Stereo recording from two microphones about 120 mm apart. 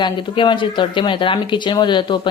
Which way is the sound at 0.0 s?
40° left (ahead or behind).